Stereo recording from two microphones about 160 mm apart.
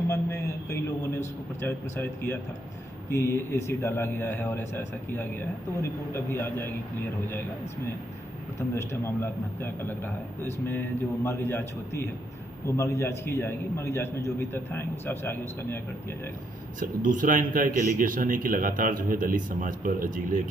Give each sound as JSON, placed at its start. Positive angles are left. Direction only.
{"t": 0.1, "sound": "a sound", "side_deg": 20}
{"t": 1.2, "sound": "a man's voice", "side_deg": 15}
{"t": 8.5, "sound": "a man's voice", "side_deg": 15}
{"t": 16.8, "sound": "a man's voice", "side_deg": -55}